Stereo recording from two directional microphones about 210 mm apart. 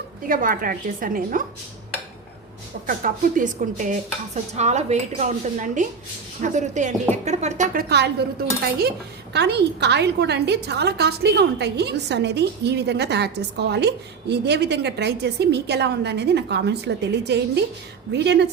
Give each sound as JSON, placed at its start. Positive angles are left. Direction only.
{"t": 0.3, "sound": "a woman's voice", "side_deg": -40}
{"t": 2.8, "sound": "a woman's voice", "side_deg": -40}
{"t": 9.3, "sound": "a woman's voice", "side_deg": -55}